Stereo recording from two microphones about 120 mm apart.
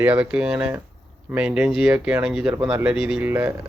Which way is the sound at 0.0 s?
10° right (ahead or behind).